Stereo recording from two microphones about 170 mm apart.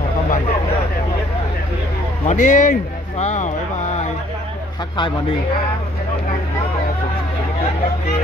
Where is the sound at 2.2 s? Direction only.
45° left (ahead or behind).